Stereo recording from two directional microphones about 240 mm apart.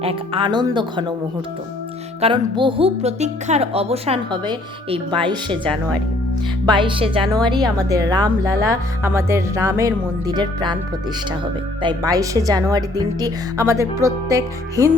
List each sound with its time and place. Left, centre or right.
0.0 s a woman's voice: right
2.2 s a woman's voice: right
6.7 s a woman's voice: centre
11.8 s a woman's voice: centre